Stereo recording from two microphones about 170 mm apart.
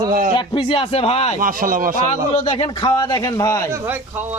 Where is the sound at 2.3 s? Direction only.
30° left (ahead or behind).